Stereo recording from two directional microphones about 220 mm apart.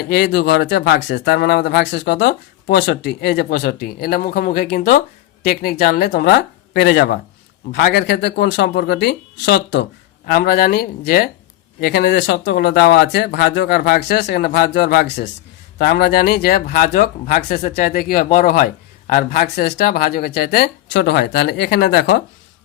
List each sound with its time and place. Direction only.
0.0 s speech: 45° left (ahead or behind)